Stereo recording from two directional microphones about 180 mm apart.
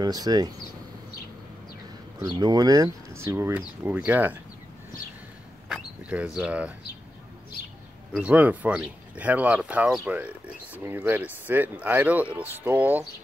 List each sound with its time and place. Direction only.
0.0 s speech: 20° right (ahead or behind)
2.1 s speech: 20° right (ahead or behind)
5.7 s a sound: 5° right (ahead or behind)
8.1 s speech: 5° right (ahead or behind)